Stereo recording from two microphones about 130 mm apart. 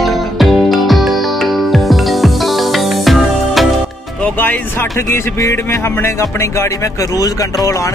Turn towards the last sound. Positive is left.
turn(degrees=25)  # may be behind; listen again after turning